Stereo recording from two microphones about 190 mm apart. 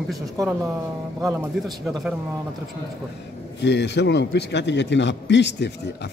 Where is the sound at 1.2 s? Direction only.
20° right (ahead or behind).